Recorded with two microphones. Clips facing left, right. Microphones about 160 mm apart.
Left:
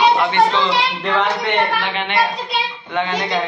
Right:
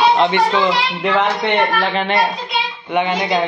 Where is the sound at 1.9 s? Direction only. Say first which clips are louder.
Right 5 dB; 40° right (ahead or behind).